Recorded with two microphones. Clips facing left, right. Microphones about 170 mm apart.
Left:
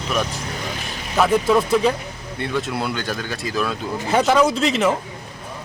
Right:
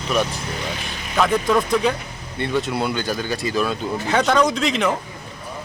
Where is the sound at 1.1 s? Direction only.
5° left (ahead or behind).